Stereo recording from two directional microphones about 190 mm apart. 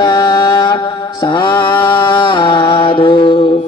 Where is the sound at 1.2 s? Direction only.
25° left (ahead or behind).